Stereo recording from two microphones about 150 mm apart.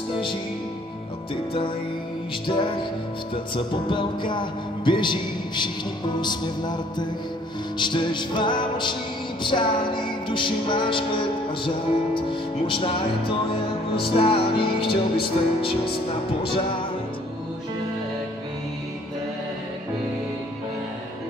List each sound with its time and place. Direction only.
2.4 s music: 35° left (ahead or behind)